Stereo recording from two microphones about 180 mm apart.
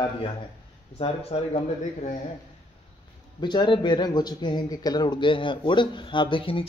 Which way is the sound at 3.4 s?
25° left (ahead or behind).